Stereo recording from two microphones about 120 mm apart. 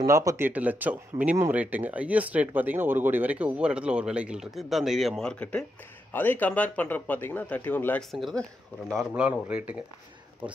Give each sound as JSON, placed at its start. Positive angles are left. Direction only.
{"t": 0.0, "sound": "speech", "side_deg": -25}
{"t": 0.5, "sound": "a man's voice", "side_deg": -15}
{"t": 8.1, "sound": "speech", "side_deg": 0}
{"t": 9.1, "sound": "speech", "side_deg": -10}